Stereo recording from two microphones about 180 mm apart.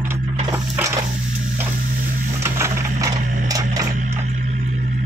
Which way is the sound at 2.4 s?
15° right (ahead or behind).